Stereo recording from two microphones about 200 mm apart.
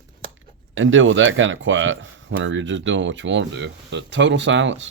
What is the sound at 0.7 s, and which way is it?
Speech, 75° right (ahead or behind).